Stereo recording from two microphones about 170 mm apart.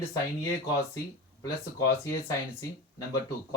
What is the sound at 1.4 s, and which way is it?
Speech, 20° left (ahead or behind).